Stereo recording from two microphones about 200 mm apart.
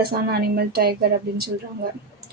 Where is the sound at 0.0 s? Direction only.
50° right (ahead or behind).